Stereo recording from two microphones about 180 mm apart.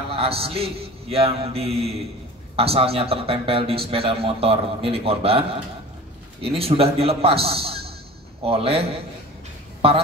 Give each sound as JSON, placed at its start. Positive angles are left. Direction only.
{"t": 0.1, "sound": "a man's voice", "side_deg": -30}
{"t": 6.4, "sound": "a man's voice", "side_deg": -30}